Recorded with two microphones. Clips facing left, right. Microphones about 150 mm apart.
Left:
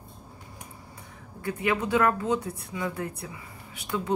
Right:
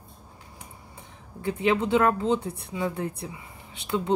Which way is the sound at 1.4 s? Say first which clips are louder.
Right 3 dB; 25° right (ahead or behind).